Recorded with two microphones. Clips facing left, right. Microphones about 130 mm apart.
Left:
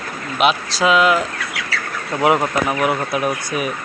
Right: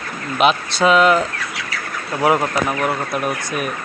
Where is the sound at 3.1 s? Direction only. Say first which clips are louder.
Left 1 dB; centre (ahead or behind).